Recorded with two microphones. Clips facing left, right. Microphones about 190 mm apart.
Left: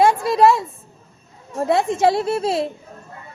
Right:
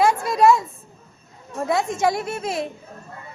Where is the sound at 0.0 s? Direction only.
25° left (ahead or behind).